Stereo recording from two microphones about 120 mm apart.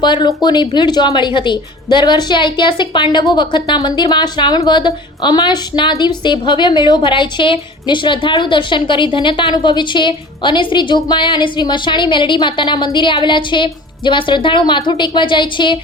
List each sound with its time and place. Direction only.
0.0 s speech: 40° left (ahead or behind)